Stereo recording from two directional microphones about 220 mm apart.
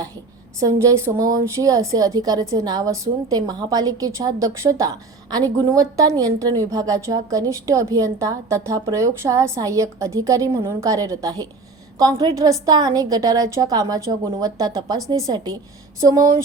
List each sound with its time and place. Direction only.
0.8 s a woman's voice: 15° right (ahead or behind)